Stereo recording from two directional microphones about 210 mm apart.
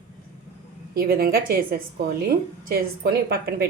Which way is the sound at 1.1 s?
45° right (ahead or behind).